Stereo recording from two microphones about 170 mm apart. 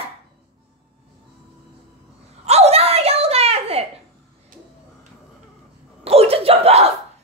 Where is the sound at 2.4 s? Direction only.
40° right (ahead or behind).